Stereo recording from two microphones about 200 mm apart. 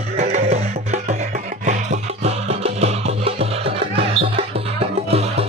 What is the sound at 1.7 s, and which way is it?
Music, 35° right (ahead or behind).